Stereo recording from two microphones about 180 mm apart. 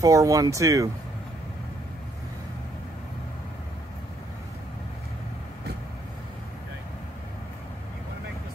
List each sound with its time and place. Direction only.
0.0 s speech: 20° right (ahead or behind)